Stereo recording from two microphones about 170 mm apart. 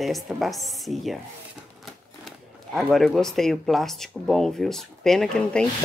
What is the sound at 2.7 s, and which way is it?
Speech, centre (ahead or behind).